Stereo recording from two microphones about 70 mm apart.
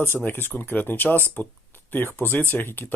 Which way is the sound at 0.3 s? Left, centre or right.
Left.